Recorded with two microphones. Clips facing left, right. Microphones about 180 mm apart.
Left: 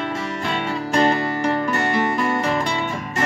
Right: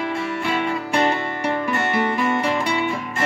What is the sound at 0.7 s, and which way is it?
Music, 40° left (ahead or behind).